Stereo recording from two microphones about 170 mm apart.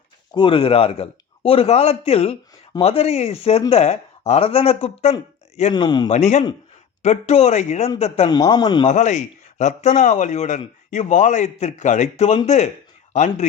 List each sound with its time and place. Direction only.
0.3 s a man's voice: 30° left (ahead or behind)
5.7 s speech: 25° left (ahead or behind)
6.1 s a man's voice: 40° left (ahead or behind)
8.3 s speech: 25° left (ahead or behind)
8.9 s a man's voice: 45° left (ahead or behind)